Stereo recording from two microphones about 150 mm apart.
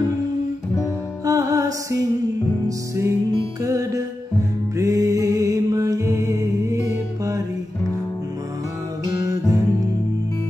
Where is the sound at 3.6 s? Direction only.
20° right (ahead or behind).